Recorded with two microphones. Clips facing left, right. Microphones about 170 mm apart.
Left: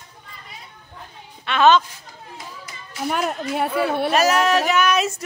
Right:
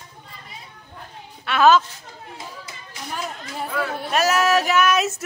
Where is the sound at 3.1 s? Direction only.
70° left (ahead or behind).